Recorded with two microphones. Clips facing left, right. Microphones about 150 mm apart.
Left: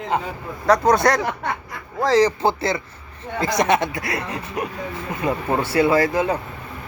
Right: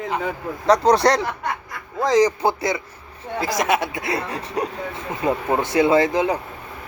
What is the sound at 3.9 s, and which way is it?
Speech, 25° right (ahead or behind).